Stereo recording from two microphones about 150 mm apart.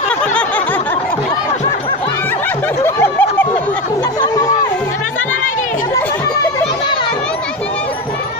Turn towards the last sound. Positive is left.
turn(degrees=20)  # may be behind; listen again after turning